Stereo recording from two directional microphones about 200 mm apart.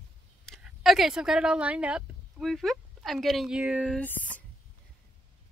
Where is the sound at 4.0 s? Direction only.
5° left (ahead or behind).